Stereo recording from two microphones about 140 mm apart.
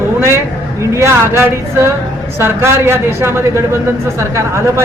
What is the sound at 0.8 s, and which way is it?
Speech, 20° right (ahead or behind).